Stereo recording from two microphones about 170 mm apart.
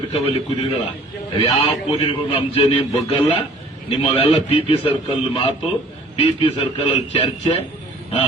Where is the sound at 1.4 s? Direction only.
35° left (ahead or behind).